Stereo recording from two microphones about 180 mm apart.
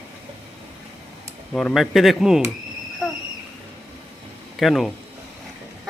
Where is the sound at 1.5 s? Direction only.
5° left (ahead or behind).